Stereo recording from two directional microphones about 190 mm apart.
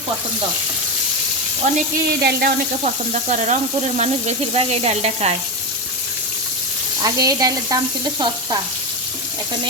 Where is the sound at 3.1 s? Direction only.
40° right (ahead or behind).